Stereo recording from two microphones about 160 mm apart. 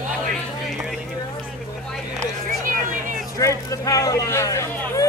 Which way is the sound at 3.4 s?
20° left (ahead or behind).